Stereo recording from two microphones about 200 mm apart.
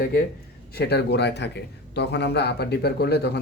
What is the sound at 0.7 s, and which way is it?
Speech, 55° left (ahead or behind).